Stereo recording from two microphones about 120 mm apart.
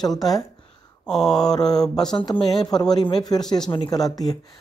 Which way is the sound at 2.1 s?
40° left (ahead or behind).